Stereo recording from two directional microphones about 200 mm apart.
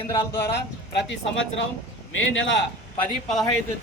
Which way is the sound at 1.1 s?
65° left (ahead or behind).